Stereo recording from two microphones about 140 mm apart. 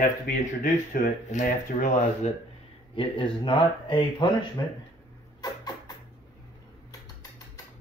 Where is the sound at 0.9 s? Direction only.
70° left (ahead or behind).